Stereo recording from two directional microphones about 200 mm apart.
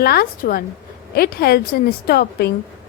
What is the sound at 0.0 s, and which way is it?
A woman's voice, 50° left (ahead or behind).